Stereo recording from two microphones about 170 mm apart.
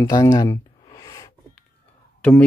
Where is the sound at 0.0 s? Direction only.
20° left (ahead or behind).